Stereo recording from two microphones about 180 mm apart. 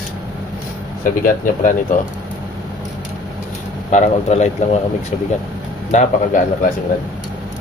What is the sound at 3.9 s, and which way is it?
Speech, 40° left (ahead or behind).